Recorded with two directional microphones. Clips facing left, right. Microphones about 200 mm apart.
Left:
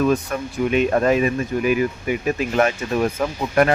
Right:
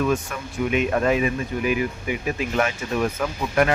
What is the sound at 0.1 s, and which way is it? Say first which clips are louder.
Speech: left 4 dB; 35° left (ahead or behind).